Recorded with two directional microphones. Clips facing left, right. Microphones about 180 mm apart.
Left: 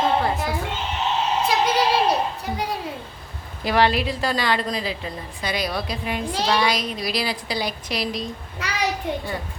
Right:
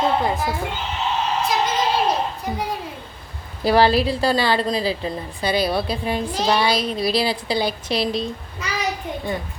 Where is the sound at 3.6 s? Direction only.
35° right (ahead or behind).